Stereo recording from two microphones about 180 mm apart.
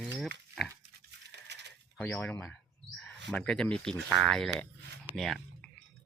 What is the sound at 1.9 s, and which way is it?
Speech, 10° left (ahead or behind).